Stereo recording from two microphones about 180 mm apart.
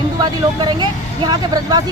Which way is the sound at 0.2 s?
25° right (ahead or behind).